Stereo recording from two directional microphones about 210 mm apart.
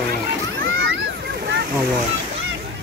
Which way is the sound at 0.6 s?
65° right (ahead or behind).